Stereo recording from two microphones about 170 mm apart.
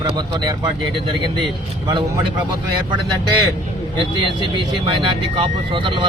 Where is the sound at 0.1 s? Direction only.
25° right (ahead or behind).